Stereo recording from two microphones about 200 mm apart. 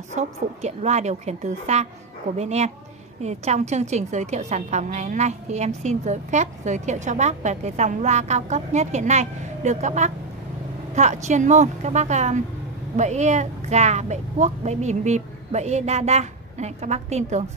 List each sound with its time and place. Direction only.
0.1 s speech: 35° right (ahead or behind)